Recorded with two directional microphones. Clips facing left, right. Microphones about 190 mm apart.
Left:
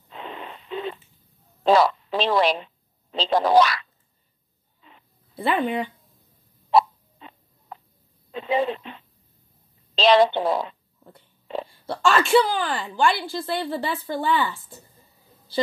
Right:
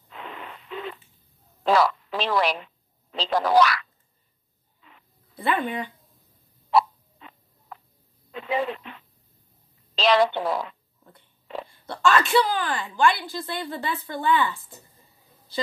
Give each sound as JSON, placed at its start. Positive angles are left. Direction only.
{"t": 0.1, "sound": "radio", "side_deg": 25}
{"t": 1.6, "sound": "a woman's voice", "side_deg": 25}
{"t": 4.8, "sound": "dog", "side_deg": 25}
{"t": 6.7, "sound": "a sound", "side_deg": 25}
{"t": 8.3, "sound": "speech", "side_deg": 25}